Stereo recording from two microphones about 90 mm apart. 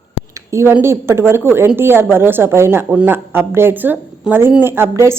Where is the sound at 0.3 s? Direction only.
30° right (ahead or behind).